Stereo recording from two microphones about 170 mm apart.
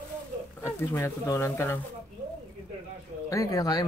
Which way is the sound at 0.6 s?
15° left (ahead or behind).